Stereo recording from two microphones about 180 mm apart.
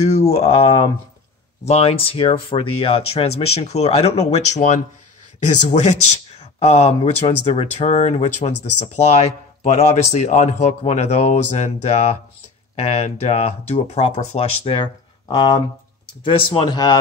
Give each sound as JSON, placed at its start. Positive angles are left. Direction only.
{"t": 0.0, "sound": "speech", "side_deg": 35}